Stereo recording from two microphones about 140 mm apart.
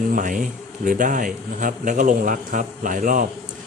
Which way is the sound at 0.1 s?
70° right (ahead or behind).